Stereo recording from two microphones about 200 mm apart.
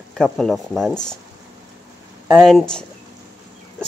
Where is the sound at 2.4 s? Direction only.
5° left (ahead or behind).